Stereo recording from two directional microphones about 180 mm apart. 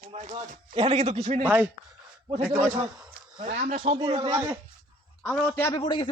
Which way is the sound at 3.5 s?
55° right (ahead or behind).